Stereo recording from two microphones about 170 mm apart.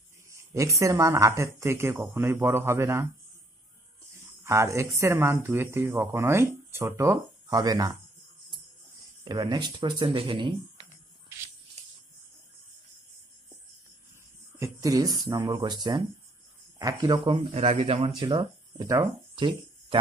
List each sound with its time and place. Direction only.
0.3 s speech: 15° right (ahead or behind)
9.2 s speech: 25° right (ahead or behind)
14.6 s speech: 20° right (ahead or behind)
17.4 s speech: 40° right (ahead or behind)